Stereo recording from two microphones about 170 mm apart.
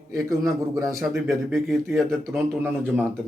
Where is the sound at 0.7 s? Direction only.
20° right (ahead or behind).